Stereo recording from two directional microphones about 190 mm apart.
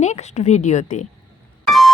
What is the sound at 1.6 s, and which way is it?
Music, centre (ahead or behind).